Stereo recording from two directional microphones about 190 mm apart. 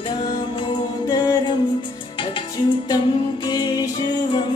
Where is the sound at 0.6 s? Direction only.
20° left (ahead or behind).